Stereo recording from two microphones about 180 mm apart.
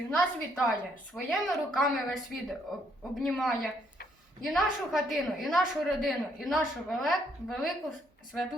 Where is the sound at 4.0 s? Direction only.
55° left (ahead or behind).